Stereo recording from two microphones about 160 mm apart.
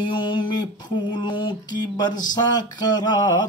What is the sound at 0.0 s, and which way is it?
Mantra, 30° left (ahead or behind).